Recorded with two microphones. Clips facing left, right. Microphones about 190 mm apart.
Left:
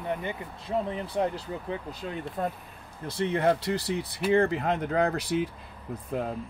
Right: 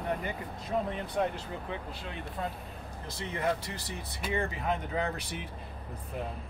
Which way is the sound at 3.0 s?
65° left (ahead or behind).